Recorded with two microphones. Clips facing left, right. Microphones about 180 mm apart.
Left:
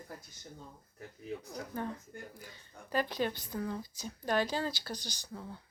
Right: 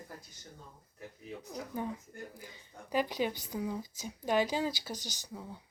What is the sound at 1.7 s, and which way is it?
Speech, 10° right (ahead or behind).